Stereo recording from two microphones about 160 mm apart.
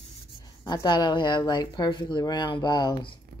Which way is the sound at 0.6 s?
25° left (ahead or behind).